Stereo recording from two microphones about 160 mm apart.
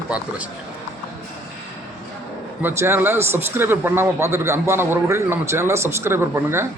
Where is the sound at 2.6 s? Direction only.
15° right (ahead or behind).